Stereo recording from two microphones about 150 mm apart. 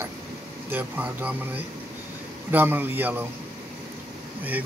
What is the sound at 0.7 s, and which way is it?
Speech, 10° right (ahead or behind).